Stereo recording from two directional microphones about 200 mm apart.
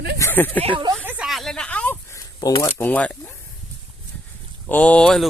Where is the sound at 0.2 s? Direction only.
10° left (ahead or behind).